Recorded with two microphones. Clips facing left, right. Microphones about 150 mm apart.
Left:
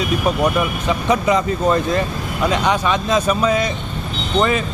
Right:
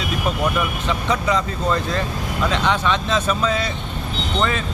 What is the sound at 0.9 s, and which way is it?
Speech, 15° left (ahead or behind).